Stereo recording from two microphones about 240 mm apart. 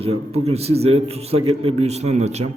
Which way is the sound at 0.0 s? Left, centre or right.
Right.